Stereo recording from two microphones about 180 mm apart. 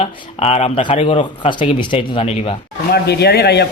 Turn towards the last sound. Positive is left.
turn(degrees=65)  # may be behind; listen again after turning